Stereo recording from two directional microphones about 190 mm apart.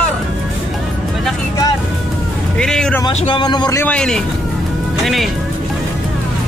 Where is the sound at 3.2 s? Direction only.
25° left (ahead or behind).